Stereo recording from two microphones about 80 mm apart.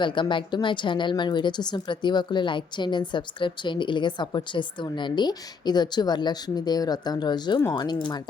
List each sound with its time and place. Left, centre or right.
0.0 s a woman's voice: left